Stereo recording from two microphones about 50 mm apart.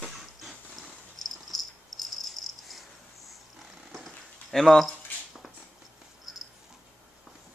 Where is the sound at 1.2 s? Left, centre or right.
Centre.